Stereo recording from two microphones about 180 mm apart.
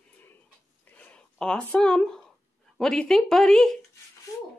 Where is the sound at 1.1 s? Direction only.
5° left (ahead or behind).